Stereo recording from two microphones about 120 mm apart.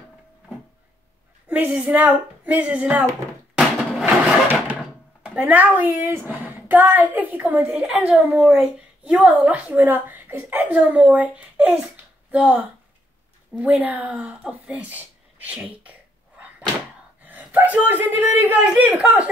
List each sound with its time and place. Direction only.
1.5 s a woman's voice: 10° right (ahead or behind)
4.0 s a sound: 15° right (ahead or behind)
5.2 s a woman's voice: 15° right (ahead or behind)